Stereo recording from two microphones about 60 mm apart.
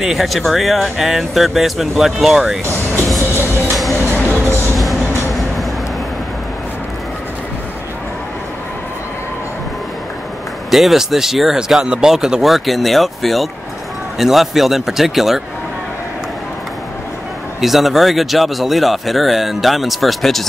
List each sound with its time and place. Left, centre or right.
0.0 s speech: centre
3.2 s music: right
4.5 s train: right
4.7 s train: centre
10.7 s speech: centre
11.8 s speech: centre
17.6 s speech: centre